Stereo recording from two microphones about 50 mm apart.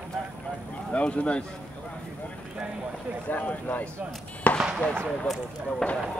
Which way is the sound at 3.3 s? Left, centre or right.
Left.